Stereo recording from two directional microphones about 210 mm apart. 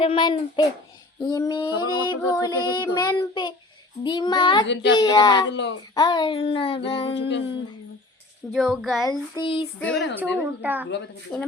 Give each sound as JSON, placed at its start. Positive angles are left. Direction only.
{"t": 0.0, "sound": "child singing", "side_deg": 25}
{"t": 4.6, "sound": "speech", "side_deg": 60}
{"t": 4.9, "sound": "child singing", "side_deg": 20}
{"t": 5.5, "sound": "speech", "side_deg": 55}
{"t": 5.9, "sound": "child singing", "side_deg": 20}
{"t": 7.2, "sound": "speech", "side_deg": 55}
{"t": 8.5, "sound": "a woman's voice", "side_deg": 0}
{"t": 9.0, "sound": "child singing", "side_deg": 20}
{"t": 9.7, "sound": "a woman's voice", "side_deg": 5}
{"t": 10.2, "sound": "a woman's voice", "side_deg": -10}
{"t": 10.8, "sound": "speech", "side_deg": 55}
{"t": 11.3, "sound": "a woman's voice", "side_deg": 5}